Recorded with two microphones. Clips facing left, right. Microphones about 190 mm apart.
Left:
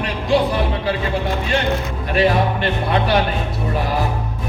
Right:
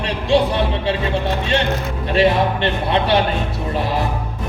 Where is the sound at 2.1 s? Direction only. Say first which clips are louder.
Right 1 dB; 25° right (ahead or behind).